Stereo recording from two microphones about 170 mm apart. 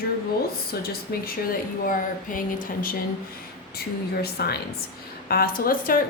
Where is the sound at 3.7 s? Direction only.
65° left (ahead or behind).